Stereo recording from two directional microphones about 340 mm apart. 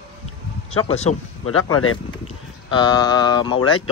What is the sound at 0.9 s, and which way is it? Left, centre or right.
Speech, centre.